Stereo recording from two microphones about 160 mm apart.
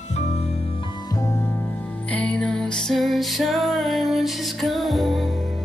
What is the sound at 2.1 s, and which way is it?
Music, 10° left (ahead or behind).